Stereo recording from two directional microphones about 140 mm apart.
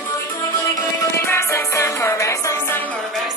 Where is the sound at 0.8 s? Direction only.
20° left (ahead or behind).